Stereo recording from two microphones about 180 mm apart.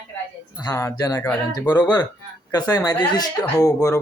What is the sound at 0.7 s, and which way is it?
Speech, 15° left (ahead or behind).